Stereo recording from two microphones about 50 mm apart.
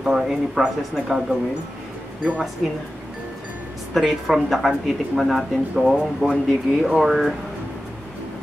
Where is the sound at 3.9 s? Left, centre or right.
Centre.